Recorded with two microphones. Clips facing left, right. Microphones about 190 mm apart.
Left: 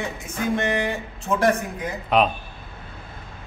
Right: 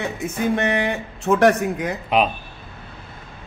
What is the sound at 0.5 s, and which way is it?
Speech, 65° right (ahead or behind).